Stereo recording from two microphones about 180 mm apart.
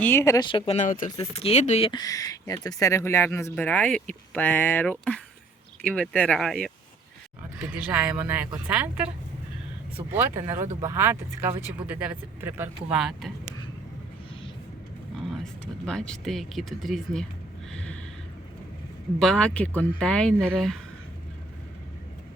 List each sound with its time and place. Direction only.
0.0 s speech: 15° left (ahead or behind); by 1.1 s 45° left (ahead or behind)
1.1 s speech: 30° left (ahead or behind)
1.9 s speech: 20° left (ahead or behind); by 6.7 s 5° left (ahead or behind)
7.9 s speech: 5° right (ahead or behind)
15.6 s speech: 5° left (ahead or behind)
19.2 s speech: 5° left (ahead or behind)